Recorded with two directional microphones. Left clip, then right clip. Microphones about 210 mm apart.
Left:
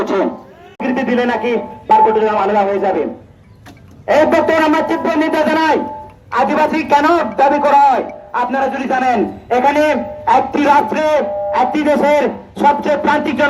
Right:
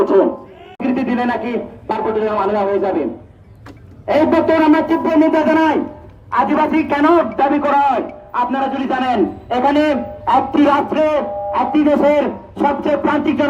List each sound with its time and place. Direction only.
0.0 s a man's voice: 50° right (ahead or behind)
4.0 s a man's voice: 45° right (ahead or behind)
7.3 s a man's voice: 35° right (ahead or behind)